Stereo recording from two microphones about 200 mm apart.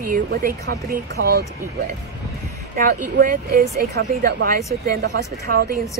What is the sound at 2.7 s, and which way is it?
A woman's voice, 45° right (ahead or behind).